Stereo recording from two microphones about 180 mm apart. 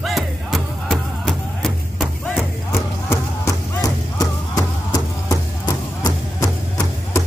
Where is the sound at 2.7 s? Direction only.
15° left (ahead or behind).